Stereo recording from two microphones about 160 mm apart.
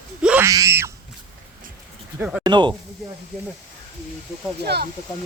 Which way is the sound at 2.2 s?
5° right (ahead or behind).